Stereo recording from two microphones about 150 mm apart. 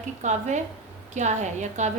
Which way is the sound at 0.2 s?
50° right (ahead or behind).